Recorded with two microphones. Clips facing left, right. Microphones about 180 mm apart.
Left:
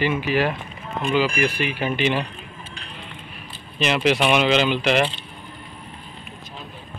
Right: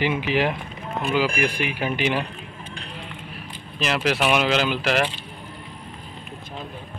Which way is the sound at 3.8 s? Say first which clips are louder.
Left 3 dB; centre (ahead or behind).